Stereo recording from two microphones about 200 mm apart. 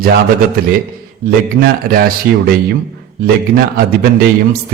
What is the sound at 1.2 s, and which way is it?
A man's voice, 50° right (ahead or behind).